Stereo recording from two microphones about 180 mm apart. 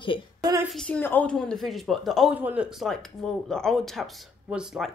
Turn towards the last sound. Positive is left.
turn(degrees=-5)  # may be behind; listen again after turning